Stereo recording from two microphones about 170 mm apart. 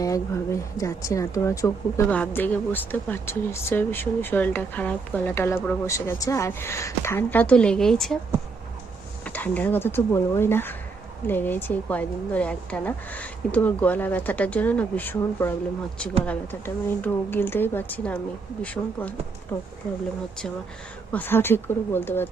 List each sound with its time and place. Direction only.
0.8 s a woman's voice: 20° left (ahead or behind); by 8.2 s 5° left (ahead or behind)
9.2 s a woman's voice: 10° left (ahead or behind)
21.1 s a woman's voice: 10° left (ahead or behind)